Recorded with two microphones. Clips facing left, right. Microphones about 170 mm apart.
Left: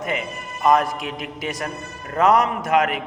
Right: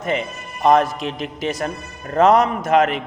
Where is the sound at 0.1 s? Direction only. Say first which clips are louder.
Right 4 dB; 30° right (ahead or behind).